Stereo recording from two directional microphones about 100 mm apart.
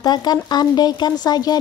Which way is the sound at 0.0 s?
45° left (ahead or behind).